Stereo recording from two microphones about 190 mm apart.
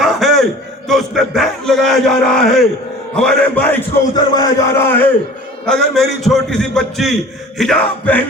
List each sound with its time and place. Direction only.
0.0 s a sound: centre (ahead or behind)
0.9 s a man's voice: centre (ahead or behind)
4.1 s a man's voice: 20° left (ahead or behind)